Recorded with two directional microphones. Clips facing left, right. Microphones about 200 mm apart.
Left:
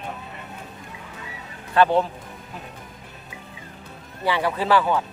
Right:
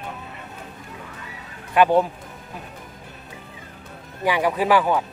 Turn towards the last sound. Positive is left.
turn(degrees=-15)  # may be behind; listen again after turning